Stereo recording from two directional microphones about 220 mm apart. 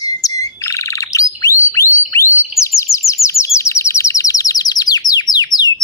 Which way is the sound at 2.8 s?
15° left (ahead or behind).